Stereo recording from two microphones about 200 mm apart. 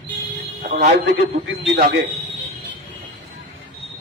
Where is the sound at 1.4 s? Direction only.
60° right (ahead or behind).